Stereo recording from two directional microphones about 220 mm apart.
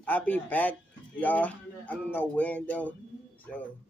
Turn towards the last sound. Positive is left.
turn(degrees=5)  # may be behind; listen again after turning